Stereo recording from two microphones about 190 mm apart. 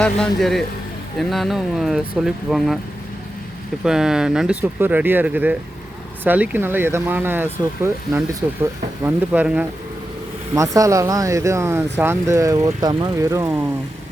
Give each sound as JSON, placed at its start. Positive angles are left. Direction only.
{"t": 0.0, "sound": "speech", "side_deg": 0}
{"t": 3.8, "sound": "speech", "side_deg": -5}